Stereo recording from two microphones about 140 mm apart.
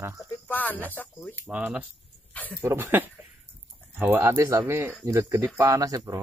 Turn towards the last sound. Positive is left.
turn(degrees=-25)  # may be behind; listen again after turning